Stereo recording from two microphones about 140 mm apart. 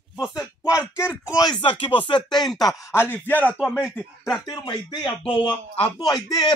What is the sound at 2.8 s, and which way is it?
Speech, 15° left (ahead or behind).